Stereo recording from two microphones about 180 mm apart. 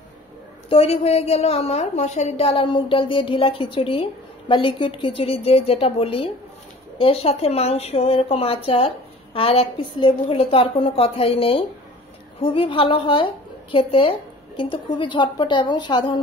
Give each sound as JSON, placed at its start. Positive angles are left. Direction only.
{"t": 0.7, "sound": "a woman's voice", "side_deg": 35}